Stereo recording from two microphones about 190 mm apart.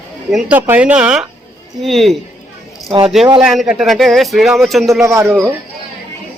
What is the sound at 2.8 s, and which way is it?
Speech, 20° right (ahead or behind).